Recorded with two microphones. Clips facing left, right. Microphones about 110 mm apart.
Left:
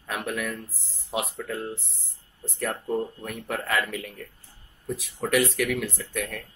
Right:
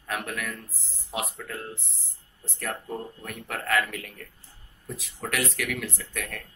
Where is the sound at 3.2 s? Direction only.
15° left (ahead or behind).